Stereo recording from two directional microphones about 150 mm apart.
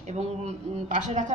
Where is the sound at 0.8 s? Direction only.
55° right (ahead or behind).